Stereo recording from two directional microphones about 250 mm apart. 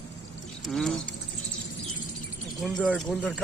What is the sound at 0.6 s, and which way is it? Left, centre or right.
Speech, centre.